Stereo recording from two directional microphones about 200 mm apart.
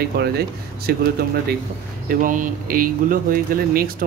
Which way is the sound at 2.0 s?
40° right (ahead or behind).